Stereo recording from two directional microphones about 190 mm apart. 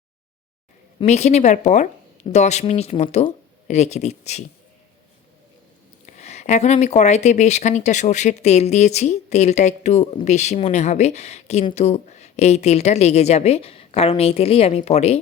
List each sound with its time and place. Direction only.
0.9 s speech: 35° left (ahead or behind)
6.1 s speech: 35° left (ahead or behind)